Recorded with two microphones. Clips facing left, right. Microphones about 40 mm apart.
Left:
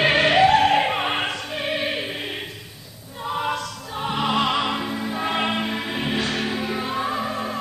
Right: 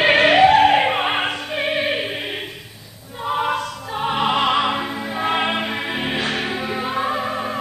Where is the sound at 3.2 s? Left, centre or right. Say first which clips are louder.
Right 4 dB; right.